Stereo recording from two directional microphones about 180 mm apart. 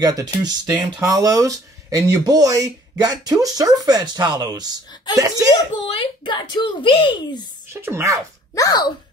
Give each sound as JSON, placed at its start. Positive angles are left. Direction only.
{"t": 0.0, "sound": "speech", "side_deg": -20}
{"t": 5.5, "sound": "speech", "side_deg": 30}
{"t": 7.7, "sound": "speech", "side_deg": -15}
{"t": 8.5, "sound": "speech", "side_deg": 20}